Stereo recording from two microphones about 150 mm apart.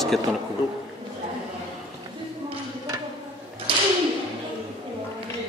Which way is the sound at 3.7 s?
35° right (ahead or behind).